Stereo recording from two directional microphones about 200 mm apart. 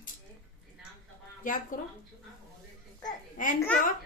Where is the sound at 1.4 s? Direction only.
40° left (ahead or behind).